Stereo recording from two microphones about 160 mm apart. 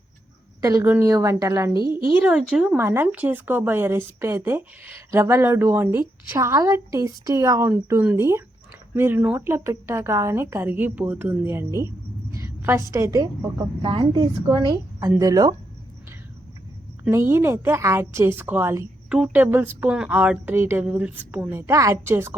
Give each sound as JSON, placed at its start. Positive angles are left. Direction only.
{"t": 0.6, "sound": "speech", "side_deg": -20}
{"t": 1.7, "sound": "a woman's voice", "side_deg": 30}
{"t": 2.1, "sound": "speech", "side_deg": -5}
{"t": 12.3, "sound": "a sound", "side_deg": -15}
{"t": 12.9, "sound": "a woman's voice", "side_deg": -20}
{"t": 13.8, "sound": "a woman's voice", "side_deg": -30}
{"t": 17.0, "sound": "speech", "side_deg": -15}
{"t": 19.0, "sound": "speech", "side_deg": -5}